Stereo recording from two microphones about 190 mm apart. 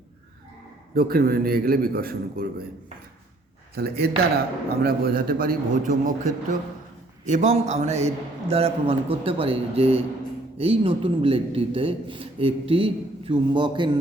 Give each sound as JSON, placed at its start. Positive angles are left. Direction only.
{"t": 0.9, "sound": "a man's voice", "side_deg": -50}
{"t": 3.8, "sound": "a man's voice", "side_deg": -55}